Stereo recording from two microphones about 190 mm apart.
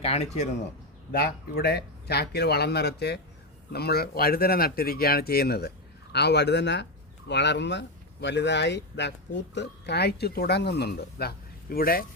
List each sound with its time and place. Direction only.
0.0 s speech: 35° left (ahead or behind)
1.1 s speech: 55° left (ahead or behind)